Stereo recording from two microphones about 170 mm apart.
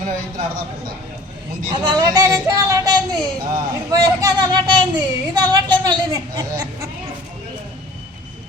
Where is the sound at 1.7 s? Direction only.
25° right (ahead or behind).